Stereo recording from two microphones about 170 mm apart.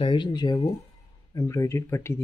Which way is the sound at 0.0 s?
25° left (ahead or behind).